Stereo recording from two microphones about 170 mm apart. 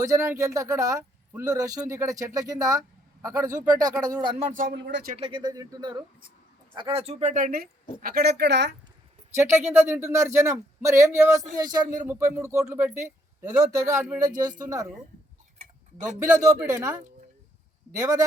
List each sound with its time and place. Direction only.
0.0 s speech: 20° right (ahead or behind)
4.4 s speech: 50° right (ahead or behind)
4.7 s speech: 80° right
5.1 s speech: 30° right (ahead or behind); by 8.7 s 85° right
9.3 s a man's voice: 15° right (ahead or behind)
16.0 s a man's voice: 20° right (ahead or behind)